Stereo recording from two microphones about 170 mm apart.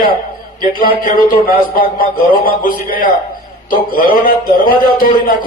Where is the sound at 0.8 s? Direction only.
55° left (ahead or behind).